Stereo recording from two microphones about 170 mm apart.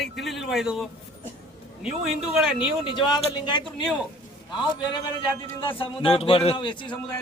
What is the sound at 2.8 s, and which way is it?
Speech, 30° left (ahead or behind).